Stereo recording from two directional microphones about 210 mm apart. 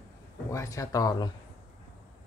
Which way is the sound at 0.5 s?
15° left (ahead or behind).